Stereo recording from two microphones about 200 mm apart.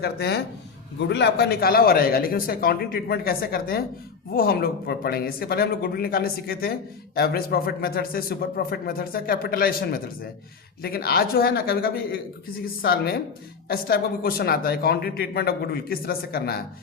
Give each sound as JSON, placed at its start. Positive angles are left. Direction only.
{"t": 0.0, "sound": "speech", "side_deg": 55}